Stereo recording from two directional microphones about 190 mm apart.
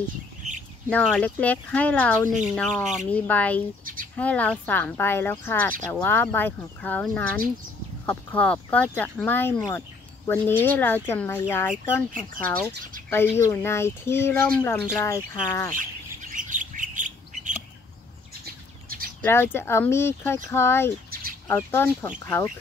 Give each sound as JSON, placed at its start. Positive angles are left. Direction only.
{"t": 0.8, "sound": "speech", "side_deg": 5}
{"t": 2.2, "sound": "speech", "side_deg": -40}
{"t": 2.5, "sound": "speech", "side_deg": 0}
{"t": 3.1, "sound": "speech", "side_deg": 10}
{"t": 3.8, "sound": "bird", "side_deg": -45}
{"t": 4.2, "sound": "speech", "side_deg": 10}
{"t": 16.2, "sound": "bird", "side_deg": -40}
{"t": 19.2, "sound": "speech", "side_deg": 10}